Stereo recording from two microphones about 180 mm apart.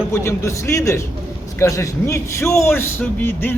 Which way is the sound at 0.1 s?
15° left (ahead or behind).